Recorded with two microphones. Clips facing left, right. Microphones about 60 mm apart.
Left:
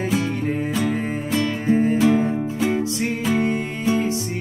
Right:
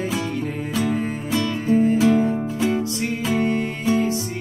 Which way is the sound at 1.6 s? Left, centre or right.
Left.